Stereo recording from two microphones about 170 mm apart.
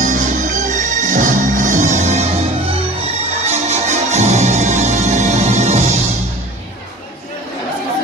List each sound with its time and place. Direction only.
0.0 s music: 50° right (ahead or behind)